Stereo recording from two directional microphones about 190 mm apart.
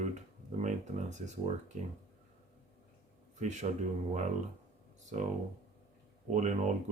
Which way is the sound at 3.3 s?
40° right (ahead or behind).